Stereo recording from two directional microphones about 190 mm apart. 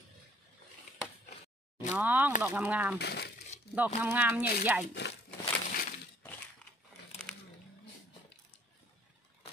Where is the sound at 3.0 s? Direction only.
60° left (ahead or behind).